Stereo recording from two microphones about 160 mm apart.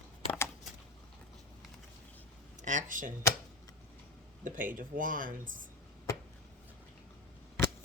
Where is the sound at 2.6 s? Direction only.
50° right (ahead or behind).